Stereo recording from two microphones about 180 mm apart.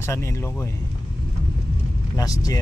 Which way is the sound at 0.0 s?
15° left (ahead or behind).